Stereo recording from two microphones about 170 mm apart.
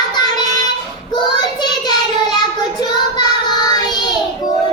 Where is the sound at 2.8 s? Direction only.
25° left (ahead or behind).